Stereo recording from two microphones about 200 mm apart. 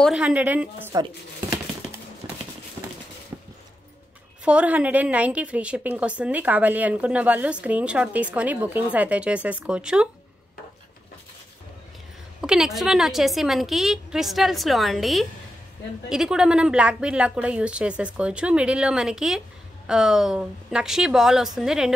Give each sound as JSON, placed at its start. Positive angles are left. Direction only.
{"t": 0.0, "sound": "a woman's voice", "side_deg": -5}
{"t": 2.2, "sound": "clip-clop", "side_deg": -20}
{"t": 3.3, "sound": "machine gun", "side_deg": -15}
{"t": 4.5, "sound": "a woman's voice", "side_deg": -5}
{"t": 12.4, "sound": "a woman's voice", "side_deg": -5}